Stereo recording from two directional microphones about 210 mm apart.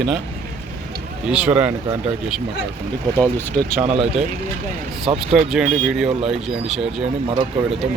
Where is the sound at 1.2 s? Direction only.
5° right (ahead or behind).